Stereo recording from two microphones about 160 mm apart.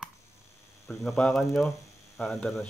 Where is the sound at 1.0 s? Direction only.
Centre (ahead or behind).